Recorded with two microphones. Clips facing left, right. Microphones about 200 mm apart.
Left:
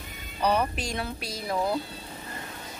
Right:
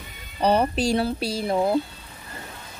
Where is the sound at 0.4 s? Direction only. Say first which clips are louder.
Right 5 dB; 30° right (ahead or behind).